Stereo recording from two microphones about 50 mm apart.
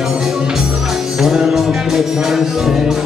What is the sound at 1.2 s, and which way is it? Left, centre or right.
Music, centre.